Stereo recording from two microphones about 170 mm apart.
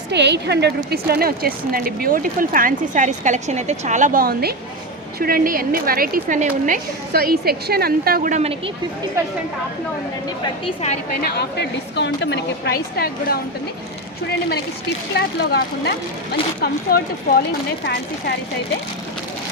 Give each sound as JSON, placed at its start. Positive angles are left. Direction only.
{"t": 0.1, "sound": "a woman's voice", "side_deg": -90}
{"t": 0.9, "sound": "speech", "side_deg": -65}
{"t": 11.2, "sound": "a woman's voice", "side_deg": 80}
{"t": 14.3, "sound": "speech", "side_deg": 80}
{"t": 16.9, "sound": "speech", "side_deg": 60}